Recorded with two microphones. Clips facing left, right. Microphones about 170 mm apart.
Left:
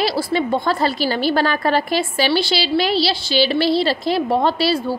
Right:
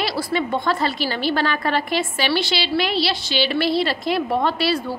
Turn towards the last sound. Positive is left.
turn(degrees=30)  # may be behind; listen again after turning